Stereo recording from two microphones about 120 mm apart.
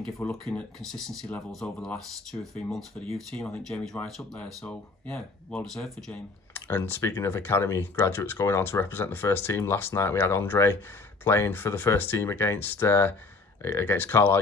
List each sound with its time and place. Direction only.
0.5 s speech: 5° left (ahead or behind)
3.3 s speech: 15° left (ahead or behind)
3.6 s speech: 5° left (ahead or behind)
6.5 s speech: 20° left (ahead or behind)